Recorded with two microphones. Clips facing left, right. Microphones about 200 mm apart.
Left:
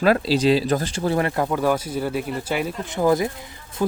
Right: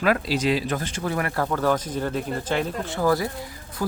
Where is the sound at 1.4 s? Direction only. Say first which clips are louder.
Left 2 dB; 10° left (ahead or behind).